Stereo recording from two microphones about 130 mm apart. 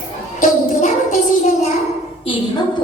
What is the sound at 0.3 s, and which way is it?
Child singing, 80° left.